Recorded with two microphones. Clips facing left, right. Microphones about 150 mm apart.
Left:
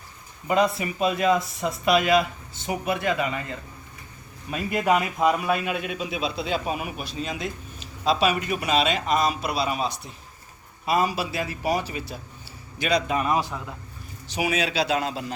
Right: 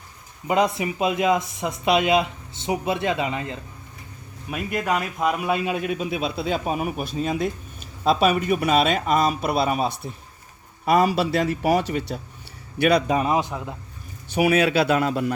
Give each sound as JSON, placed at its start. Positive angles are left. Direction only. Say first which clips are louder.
{"t": 0.4, "sound": "speech", "louder": "right 1 dB", "side_deg": -20}
{"t": 4.4, "sound": "speech", "louder": "left 2 dB", "side_deg": 0}
{"t": 5.2, "sound": "speech", "louder": "even", "side_deg": -5}
{"t": 5.5, "sound": "speech", "louder": "right 1 dB", "side_deg": -25}
{"t": 5.7, "sound": "speech", "louder": "right 4 dB", "side_deg": -45}
{"t": 13.1, "sound": "speech", "louder": "right 3 dB", "side_deg": -25}
{"t": 14.3, "sound": "a man's voice", "louder": "right 7 dB", "side_deg": -55}